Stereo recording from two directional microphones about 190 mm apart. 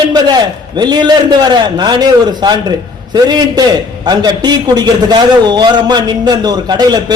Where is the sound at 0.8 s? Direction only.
20° right (ahead or behind).